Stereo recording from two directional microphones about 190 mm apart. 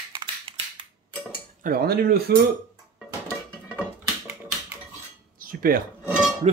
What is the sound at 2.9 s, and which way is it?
Dishes, centre (ahead or behind).